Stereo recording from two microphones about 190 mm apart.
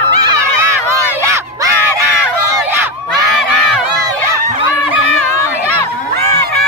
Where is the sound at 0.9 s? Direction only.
15° right (ahead or behind).